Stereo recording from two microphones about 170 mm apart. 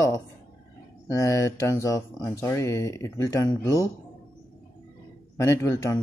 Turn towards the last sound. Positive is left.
turn(degrees=15)  # may be behind; listen again after turning